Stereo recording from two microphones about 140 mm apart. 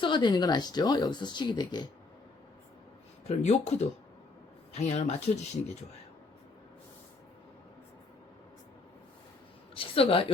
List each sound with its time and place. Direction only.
0.0 s speech: 35° left (ahead or behind)
3.2 s speech: 55° left (ahead or behind)
9.7 s speech: 40° left (ahead or behind)